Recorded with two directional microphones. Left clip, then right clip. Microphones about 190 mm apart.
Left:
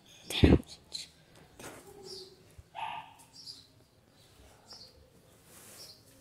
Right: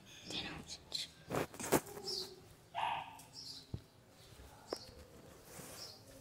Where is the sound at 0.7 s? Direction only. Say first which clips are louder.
Right 1 dB; 15° left (ahead or behind).